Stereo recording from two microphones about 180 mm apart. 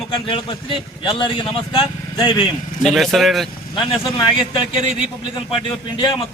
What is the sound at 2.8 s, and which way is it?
Speech, centre (ahead or behind).